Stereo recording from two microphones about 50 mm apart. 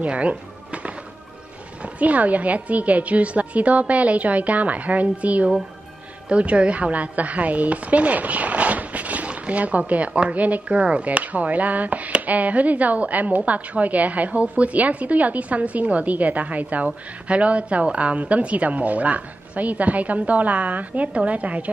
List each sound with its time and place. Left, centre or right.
0.0 s music: right
1.8 s a woman's voice: right